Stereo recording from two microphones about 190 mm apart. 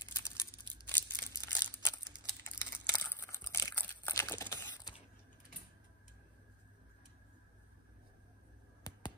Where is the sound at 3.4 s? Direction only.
15° left (ahead or behind).